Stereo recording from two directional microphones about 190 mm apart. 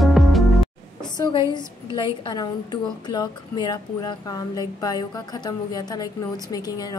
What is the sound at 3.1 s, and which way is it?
Speech, 20° left (ahead or behind).